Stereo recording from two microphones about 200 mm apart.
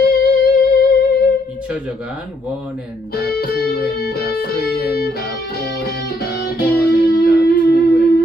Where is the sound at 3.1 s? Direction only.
50° left (ahead or behind).